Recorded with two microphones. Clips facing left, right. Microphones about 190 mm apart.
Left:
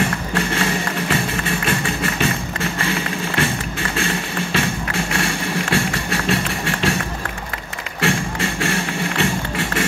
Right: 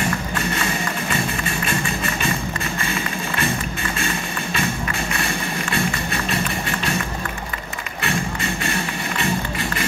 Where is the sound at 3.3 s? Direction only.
75° left (ahead or behind).